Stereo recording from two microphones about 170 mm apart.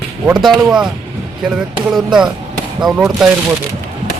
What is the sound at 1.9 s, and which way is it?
Speech, 5° right (ahead or behind).